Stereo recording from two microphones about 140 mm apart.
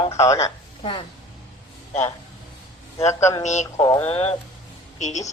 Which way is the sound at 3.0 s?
20° left (ahead or behind).